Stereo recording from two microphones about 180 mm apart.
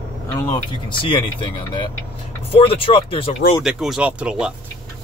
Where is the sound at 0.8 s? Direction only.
25° left (ahead or behind).